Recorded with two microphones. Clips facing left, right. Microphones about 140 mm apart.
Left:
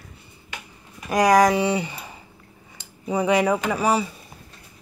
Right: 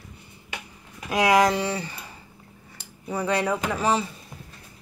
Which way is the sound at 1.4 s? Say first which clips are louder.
Left 4 dB; 15° left (ahead or behind).